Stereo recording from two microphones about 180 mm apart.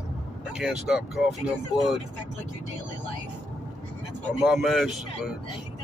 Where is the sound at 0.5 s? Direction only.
5° right (ahead or behind).